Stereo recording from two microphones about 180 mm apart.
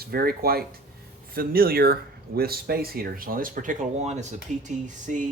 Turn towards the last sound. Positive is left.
turn(degrees=-45)  # may be behind; listen again after turning